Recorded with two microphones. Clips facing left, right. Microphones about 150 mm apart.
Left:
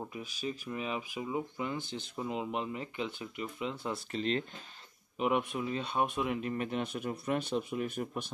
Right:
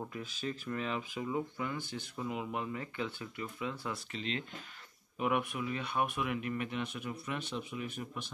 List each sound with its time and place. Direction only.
0.0 s speech: 15° left (ahead or behind)
4.1 s speech: 40° left (ahead or behind)
5.2 s speech: 25° left (ahead or behind); by 8.3 s 45° left (ahead or behind)